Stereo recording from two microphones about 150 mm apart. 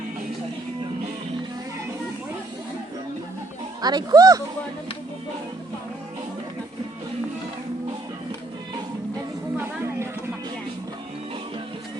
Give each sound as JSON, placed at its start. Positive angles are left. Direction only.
{"t": 3.8, "sound": "speech", "side_deg": -25}